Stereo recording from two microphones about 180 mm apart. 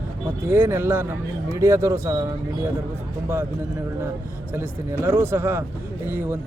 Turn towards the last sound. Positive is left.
turn(degrees=-10)  # may be behind; listen again after turning